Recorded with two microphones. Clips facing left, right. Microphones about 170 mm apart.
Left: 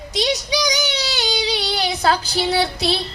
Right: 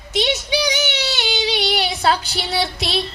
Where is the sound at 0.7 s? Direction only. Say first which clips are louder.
Right 1 dB; 35° left (ahead or behind).